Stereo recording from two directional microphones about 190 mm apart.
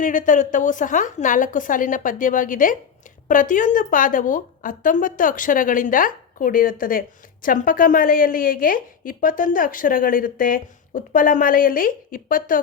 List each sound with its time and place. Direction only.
0.0 s a woman's voice: 45° left (ahead or behind)